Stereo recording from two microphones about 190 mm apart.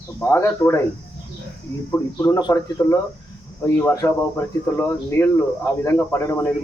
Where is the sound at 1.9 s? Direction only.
15° left (ahead or behind).